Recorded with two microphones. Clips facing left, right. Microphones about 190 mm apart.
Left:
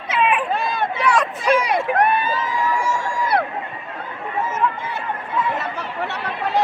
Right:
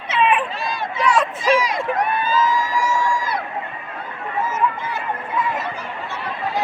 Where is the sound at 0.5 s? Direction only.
60° left (ahead or behind).